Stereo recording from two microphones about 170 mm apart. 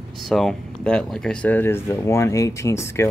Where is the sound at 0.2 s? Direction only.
Centre (ahead or behind).